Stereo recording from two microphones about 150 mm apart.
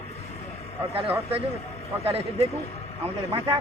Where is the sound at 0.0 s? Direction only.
45° left (ahead or behind).